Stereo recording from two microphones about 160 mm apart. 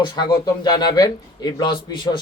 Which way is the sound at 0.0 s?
30° left (ahead or behind).